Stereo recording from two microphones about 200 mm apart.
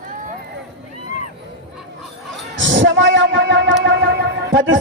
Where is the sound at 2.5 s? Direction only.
70° right (ahead or behind).